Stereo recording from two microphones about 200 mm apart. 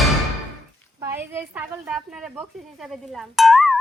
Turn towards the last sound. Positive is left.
turn(degrees=0)  # may be behind; listen again after turning